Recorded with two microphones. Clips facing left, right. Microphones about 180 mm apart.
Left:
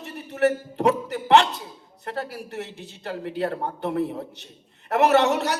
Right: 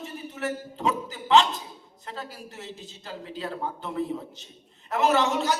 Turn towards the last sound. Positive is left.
turn(degrees=65)  # may be behind; listen again after turning